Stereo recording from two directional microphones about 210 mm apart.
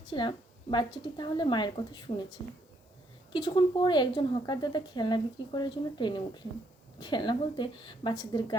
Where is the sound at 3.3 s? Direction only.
20° left (ahead or behind).